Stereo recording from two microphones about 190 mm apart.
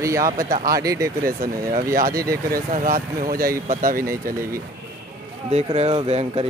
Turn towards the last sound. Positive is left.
turn(degrees=-35)  # may be behind; listen again after turning